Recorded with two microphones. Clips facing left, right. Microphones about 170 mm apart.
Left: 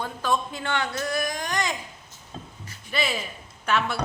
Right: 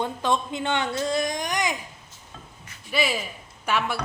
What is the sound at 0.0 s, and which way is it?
Speech, 20° right (ahead or behind).